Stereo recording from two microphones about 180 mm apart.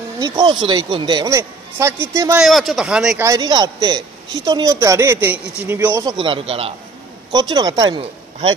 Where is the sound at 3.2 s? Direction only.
20° right (ahead or behind).